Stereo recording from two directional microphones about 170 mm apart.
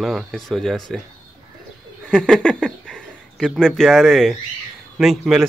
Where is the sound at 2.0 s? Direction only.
5° left (ahead or behind).